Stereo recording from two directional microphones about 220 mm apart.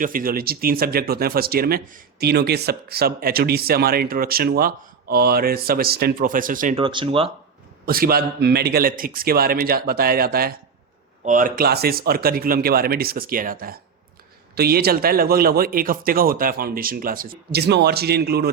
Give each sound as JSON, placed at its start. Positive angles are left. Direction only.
{"t": 0.0, "sound": "speech", "side_deg": -40}
{"t": 6.7, "sound": "speech", "side_deg": -25}
{"t": 7.9, "sound": "speech", "side_deg": -40}